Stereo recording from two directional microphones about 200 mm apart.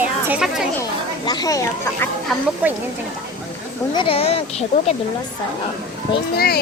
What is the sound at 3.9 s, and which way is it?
Speech, 25° left (ahead or behind).